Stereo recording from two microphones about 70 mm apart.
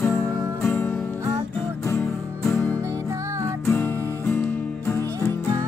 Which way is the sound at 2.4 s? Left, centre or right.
Left.